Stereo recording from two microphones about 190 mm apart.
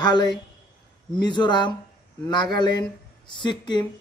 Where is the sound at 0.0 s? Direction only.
25° left (ahead or behind).